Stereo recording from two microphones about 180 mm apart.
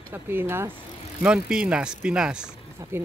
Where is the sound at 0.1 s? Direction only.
10° right (ahead or behind).